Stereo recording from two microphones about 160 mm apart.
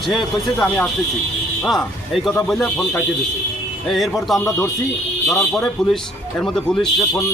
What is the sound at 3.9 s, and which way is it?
Speech, centre (ahead or behind).